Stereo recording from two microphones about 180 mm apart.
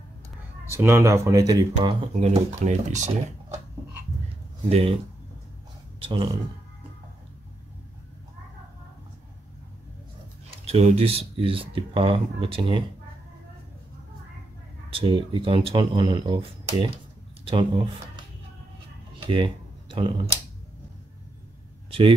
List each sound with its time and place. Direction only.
0.7 s speech: 15° right (ahead or behind)
1.8 s speech: 35° right (ahead or behind)
4.6 s speech: 35° right (ahead or behind)
5.9 s speech: 30° right (ahead or behind)
10.7 s speech: 35° right (ahead or behind)
14.9 s speech: 30° right (ahead or behind)
19.2 s speech: 25° right (ahead or behind)